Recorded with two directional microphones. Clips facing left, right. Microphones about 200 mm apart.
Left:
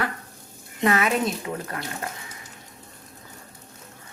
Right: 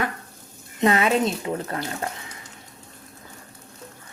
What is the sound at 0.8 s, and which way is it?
Speech, 25° right (ahead or behind).